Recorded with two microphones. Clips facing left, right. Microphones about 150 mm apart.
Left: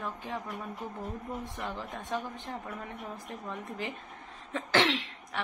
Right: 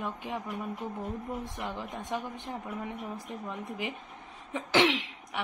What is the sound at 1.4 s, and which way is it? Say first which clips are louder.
A woman's voice: right 1 dB; 15° right (ahead or behind).